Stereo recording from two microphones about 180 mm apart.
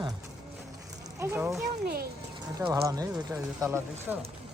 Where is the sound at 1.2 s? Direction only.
15° right (ahead or behind).